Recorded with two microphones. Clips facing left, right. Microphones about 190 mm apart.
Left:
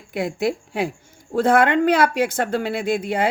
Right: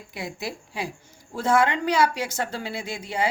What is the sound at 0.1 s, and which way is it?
Speech, 55° left (ahead or behind).